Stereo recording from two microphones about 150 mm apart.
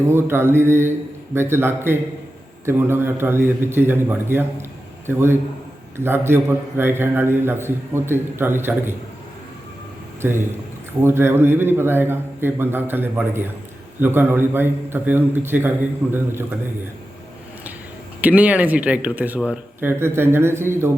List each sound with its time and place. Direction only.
0.0 s a man's voice: 15° right (ahead or behind)
10.2 s a man's voice: 15° right (ahead or behind)
18.2 s a man's voice: 10° right (ahead or behind)